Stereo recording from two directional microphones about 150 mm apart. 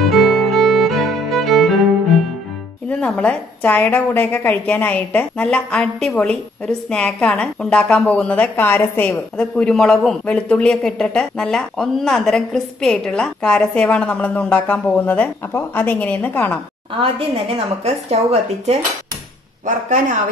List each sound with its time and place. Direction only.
0.0 s music: centre (ahead or behind)
2.9 s a woman's voice: 10° left (ahead or behind)
17.8 s speech: 45° right (ahead or behind)
19.6 s speech: 55° right (ahead or behind)